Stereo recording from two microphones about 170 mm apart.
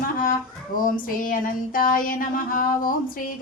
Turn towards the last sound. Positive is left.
turn(degrees=55)  # may be behind; listen again after turning